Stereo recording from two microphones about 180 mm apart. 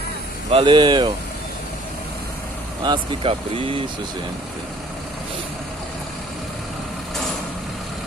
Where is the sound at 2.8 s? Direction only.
30° right (ahead or behind).